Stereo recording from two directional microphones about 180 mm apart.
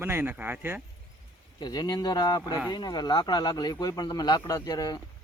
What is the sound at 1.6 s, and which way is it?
Speech, 25° left (ahead or behind).